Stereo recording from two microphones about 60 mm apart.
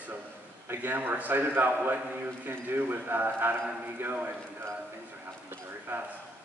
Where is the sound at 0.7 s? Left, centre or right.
Right.